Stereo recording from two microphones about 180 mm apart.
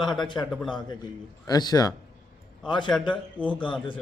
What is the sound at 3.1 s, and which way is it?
Speech, 5° left (ahead or behind).